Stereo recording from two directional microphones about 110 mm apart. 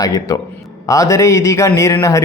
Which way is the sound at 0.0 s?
30° left (ahead or behind).